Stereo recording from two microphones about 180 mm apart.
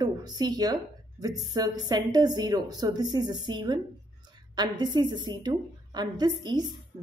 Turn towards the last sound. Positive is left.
turn(degrees=-25)  # may be behind; listen again after turning